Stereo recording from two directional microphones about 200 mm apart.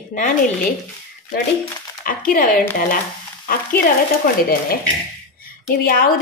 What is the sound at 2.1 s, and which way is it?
Speech, 45° left (ahead or behind).